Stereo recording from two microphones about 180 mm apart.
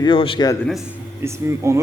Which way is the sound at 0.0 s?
30° left (ahead or behind).